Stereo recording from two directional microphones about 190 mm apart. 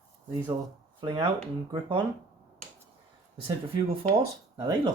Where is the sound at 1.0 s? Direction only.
25° right (ahead or behind).